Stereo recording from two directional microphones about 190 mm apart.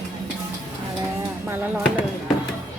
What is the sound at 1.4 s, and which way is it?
Speech, 10° right (ahead or behind).